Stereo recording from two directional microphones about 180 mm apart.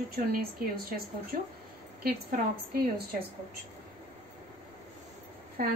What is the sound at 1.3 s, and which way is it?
A woman's voice, 50° right (ahead or behind).